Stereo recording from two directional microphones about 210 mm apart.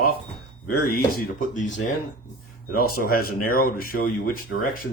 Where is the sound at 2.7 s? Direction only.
45° left (ahead or behind).